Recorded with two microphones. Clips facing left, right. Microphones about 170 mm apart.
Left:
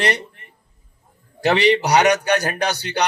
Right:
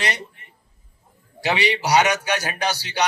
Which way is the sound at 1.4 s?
55° left (ahead or behind).